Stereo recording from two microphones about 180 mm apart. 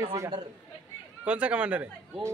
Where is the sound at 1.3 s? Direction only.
5° right (ahead or behind).